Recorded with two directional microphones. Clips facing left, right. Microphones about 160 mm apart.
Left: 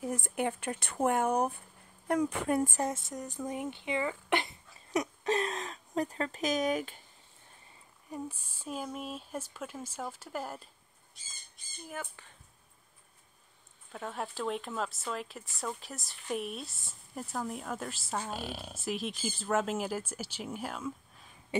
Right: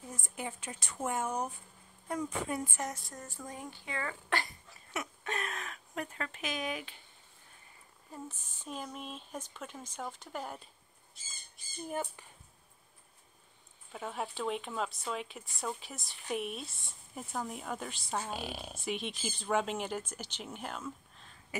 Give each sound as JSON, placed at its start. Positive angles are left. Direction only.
{"t": 0.0, "sound": "speech", "side_deg": 70}
{"t": 2.8, "sound": "speech", "side_deg": 25}
{"t": 4.9, "sound": "speech", "side_deg": 35}
{"t": 8.1, "sound": "speech", "side_deg": 10}
{"t": 11.9, "sound": "speech", "side_deg": -20}
{"t": 13.9, "sound": "speech", "side_deg": 0}